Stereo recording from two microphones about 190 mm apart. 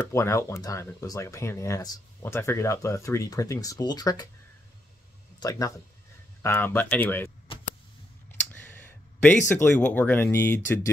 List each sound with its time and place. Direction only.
0.0 s speech: 15° left (ahead or behind)
5.4 s speech: 20° left (ahead or behind)
8.5 s a sound: 10° left (ahead or behind)
9.5 s speech: 10° left (ahead or behind)